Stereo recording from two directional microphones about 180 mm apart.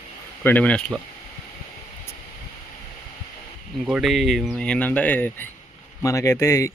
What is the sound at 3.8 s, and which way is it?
Speech, 5° right (ahead or behind).